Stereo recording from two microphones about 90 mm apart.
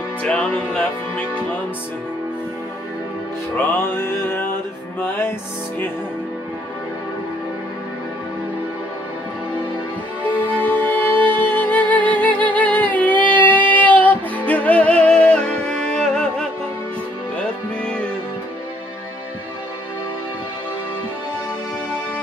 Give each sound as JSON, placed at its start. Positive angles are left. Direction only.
{"t": 0.2, "sound": "music", "side_deg": 15}
{"t": 3.5, "sound": "music", "side_deg": 25}
{"t": 10.2, "sound": "music", "side_deg": 20}